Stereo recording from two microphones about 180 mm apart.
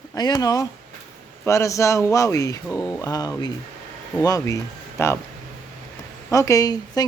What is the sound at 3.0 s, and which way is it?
Speech, 20° left (ahead or behind).